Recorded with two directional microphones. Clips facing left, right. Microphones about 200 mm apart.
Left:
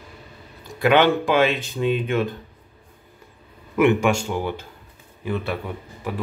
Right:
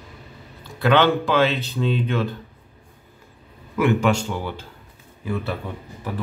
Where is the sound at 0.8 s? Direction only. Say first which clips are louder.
Left 1 dB; 15° left (ahead or behind).